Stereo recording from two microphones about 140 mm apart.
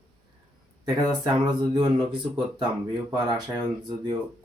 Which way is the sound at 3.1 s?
30° right (ahead or behind).